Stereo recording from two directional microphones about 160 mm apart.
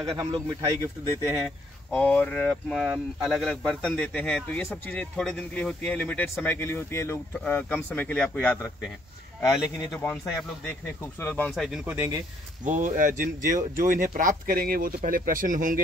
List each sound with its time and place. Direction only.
0.0 s speech: 30° right (ahead or behind)
1.9 s speech: 10° left (ahead or behind)
9.8 s speech: 15° left (ahead or behind)
11.5 s speech: centre (ahead or behind)
11.8 s speech: 10° right (ahead or behind)
12.6 s speech: 50° right (ahead or behind)